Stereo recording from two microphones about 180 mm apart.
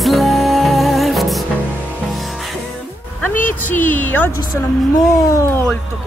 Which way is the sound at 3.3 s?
45° left (ahead or behind).